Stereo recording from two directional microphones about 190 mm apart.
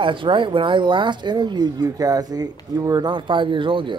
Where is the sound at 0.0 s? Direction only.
25° right (ahead or behind).